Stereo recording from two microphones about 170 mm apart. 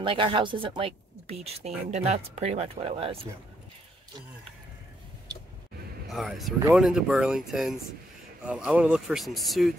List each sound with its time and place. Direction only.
0.0 s speech: 30° right (ahead or behind)
6.0 s speech: centre (ahead or behind)